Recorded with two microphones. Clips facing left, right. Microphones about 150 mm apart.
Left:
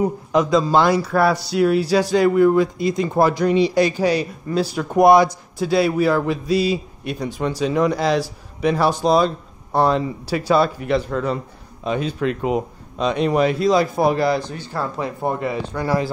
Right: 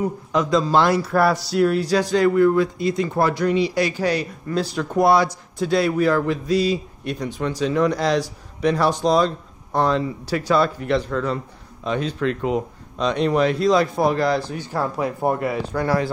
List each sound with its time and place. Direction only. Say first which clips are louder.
0.0 s a man's voice: left 3 dB; 15° left (ahead or behind)
0.5 s a man's voice: even; 5° left (ahead or behind)
5.6 s a man's voice: left 1 dB; 5° left (ahead or behind)
14.4 s speech: right 1 dB; 10° right (ahead or behind)